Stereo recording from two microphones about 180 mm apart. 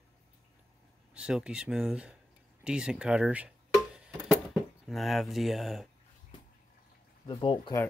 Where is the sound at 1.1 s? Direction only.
5° right (ahead or behind).